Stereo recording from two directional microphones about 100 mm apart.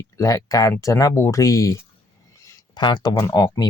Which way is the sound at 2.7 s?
50° left (ahead or behind).